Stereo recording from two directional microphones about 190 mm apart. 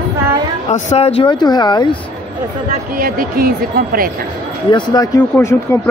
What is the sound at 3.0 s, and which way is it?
Speech, 50° right (ahead or behind).